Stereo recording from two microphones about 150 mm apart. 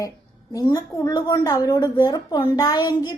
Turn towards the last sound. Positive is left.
turn(degrees=30)  # may be behind; listen again after turning